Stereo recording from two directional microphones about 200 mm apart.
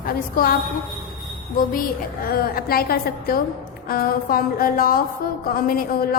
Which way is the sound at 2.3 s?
50° left (ahead or behind).